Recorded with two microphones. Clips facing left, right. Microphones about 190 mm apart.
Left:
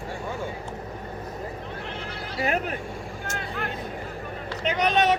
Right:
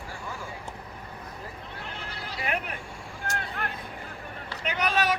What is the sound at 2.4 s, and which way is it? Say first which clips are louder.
Speech: left 6 dB; 30° left (ahead or behind).